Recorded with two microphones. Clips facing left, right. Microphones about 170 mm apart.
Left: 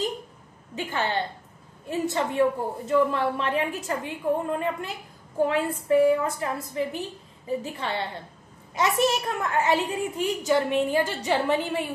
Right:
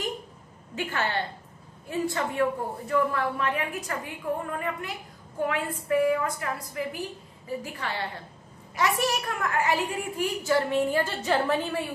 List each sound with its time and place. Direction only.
0.7 s a woman's voice: 15° left (ahead or behind)